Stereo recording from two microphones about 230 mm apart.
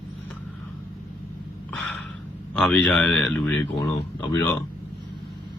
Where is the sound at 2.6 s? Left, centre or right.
Centre.